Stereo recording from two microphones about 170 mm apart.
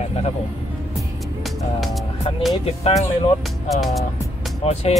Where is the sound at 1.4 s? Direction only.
Centre (ahead or behind).